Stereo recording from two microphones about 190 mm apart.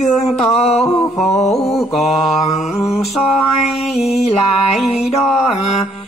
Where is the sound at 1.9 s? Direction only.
Centre (ahead or behind).